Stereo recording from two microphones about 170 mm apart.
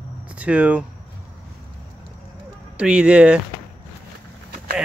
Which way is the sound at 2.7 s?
5° right (ahead or behind).